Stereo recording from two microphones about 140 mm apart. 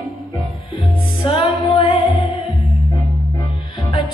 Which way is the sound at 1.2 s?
35° left (ahead or behind).